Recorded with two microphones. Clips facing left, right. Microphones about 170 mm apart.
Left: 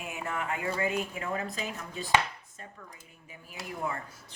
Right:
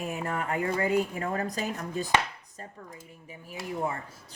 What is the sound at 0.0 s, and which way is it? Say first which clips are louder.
Speech: right 4 dB; 35° right (ahead or behind).